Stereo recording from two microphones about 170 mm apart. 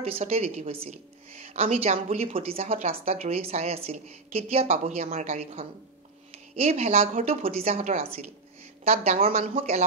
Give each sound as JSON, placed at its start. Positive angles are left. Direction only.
{"t": 0.0, "sound": "a woman's voice", "side_deg": -35}